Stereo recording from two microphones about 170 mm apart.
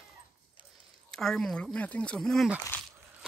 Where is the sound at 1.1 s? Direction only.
5° left (ahead or behind).